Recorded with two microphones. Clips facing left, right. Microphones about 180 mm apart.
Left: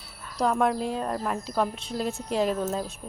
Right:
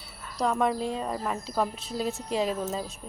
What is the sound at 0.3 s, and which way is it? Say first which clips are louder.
Speech: left 2 dB; centre (ahead or behind).